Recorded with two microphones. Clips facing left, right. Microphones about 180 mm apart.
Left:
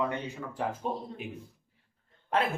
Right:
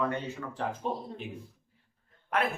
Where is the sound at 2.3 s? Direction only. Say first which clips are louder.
Left 1 dB; 30° left (ahead or behind).